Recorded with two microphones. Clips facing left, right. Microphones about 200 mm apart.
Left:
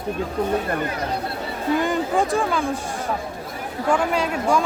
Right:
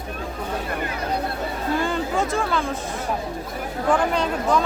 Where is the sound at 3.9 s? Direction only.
10° left (ahead or behind).